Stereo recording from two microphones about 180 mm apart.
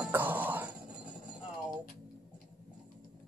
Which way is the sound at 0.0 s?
10° right (ahead or behind).